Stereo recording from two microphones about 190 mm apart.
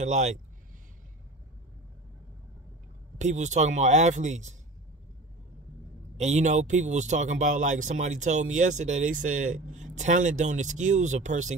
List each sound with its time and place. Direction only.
0.0 s speech: 35° right (ahead or behind)
3.2 s speech: 40° right (ahead or behind)
6.1 s speech: 35° right (ahead or behind)